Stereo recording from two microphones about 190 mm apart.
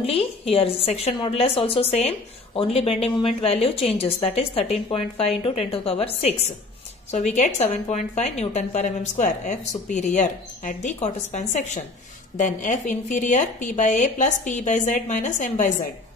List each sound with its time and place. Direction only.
0.0 s a woman's voice: 30° left (ahead or behind)